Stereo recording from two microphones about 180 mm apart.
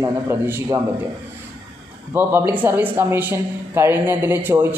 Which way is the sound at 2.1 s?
10° right (ahead or behind).